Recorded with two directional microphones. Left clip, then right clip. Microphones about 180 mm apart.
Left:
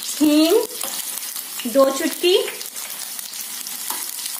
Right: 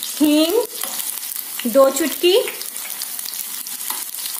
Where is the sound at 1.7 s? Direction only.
45° right (ahead or behind).